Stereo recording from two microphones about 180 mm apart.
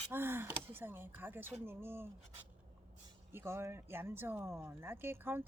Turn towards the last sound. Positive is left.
turn(degrees=-15)  # may be behind; listen again after turning